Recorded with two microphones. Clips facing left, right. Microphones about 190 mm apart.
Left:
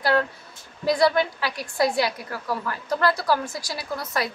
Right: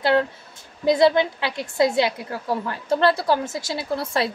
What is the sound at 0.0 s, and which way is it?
A woman's voice, 25° right (ahead or behind).